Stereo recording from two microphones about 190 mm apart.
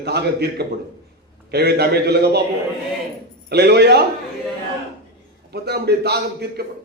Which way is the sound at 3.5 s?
60° right (ahead or behind).